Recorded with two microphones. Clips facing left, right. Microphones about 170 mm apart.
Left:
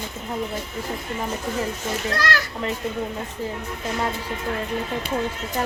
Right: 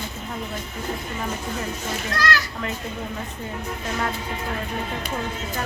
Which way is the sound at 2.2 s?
55° left (ahead or behind).